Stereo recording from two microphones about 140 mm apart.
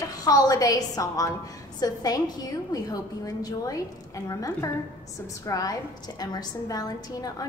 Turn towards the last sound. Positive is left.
turn(degrees=25)  # may be behind; listen again after turning